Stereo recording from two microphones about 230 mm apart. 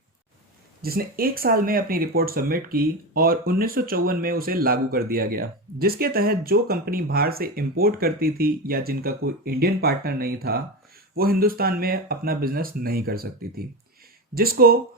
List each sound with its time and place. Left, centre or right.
0.8 s speech: right